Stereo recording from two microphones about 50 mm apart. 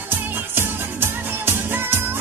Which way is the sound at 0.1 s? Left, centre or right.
Right.